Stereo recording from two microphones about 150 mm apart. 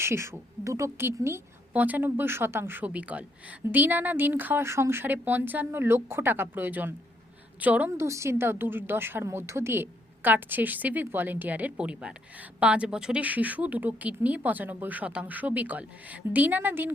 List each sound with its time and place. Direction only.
0.0 s a woman's voice: 15° right (ahead or behind)